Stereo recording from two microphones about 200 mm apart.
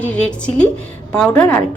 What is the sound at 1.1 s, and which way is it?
Speech, 5° left (ahead or behind).